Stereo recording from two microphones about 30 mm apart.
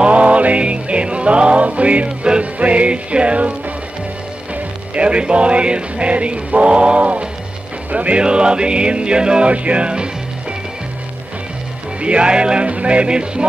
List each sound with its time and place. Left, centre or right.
0.0 s music: right
2.0 s music: right
2.6 s music: right
4.9 s music: right
8.2 s music: right
9.5 s music: right
12.0 s music: right